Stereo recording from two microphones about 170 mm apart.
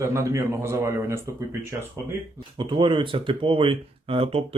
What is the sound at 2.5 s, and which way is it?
Speech, 30° right (ahead or behind).